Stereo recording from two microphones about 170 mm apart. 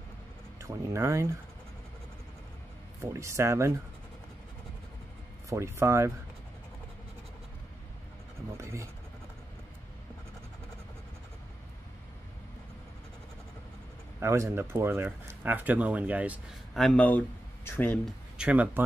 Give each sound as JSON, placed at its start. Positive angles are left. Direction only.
{"t": 0.6, "sound": "speech", "side_deg": -15}
{"t": 3.0, "sound": "speech", "side_deg": -15}
{"t": 5.5, "sound": "speech", "side_deg": -15}
{"t": 8.5, "sound": "speech", "side_deg": -15}
{"t": 14.2, "sound": "speech", "side_deg": -15}
{"t": 16.7, "sound": "speech", "side_deg": 5}
{"t": 18.4, "sound": "speech", "side_deg": -10}